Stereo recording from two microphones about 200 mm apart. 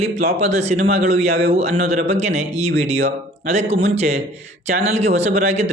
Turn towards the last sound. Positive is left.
turn(degrees=-35)  # may be behind; listen again after turning